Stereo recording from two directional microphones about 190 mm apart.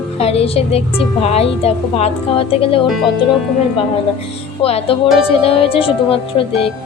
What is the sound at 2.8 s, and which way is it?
Speech, centre (ahead or behind).